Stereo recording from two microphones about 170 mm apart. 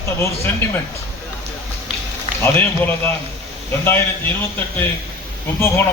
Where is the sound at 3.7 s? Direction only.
15° left (ahead or behind).